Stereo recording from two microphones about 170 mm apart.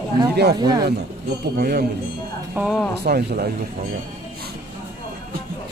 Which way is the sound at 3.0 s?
70° right (ahead or behind).